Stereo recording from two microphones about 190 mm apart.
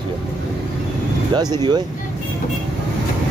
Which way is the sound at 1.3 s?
20° right (ahead or behind).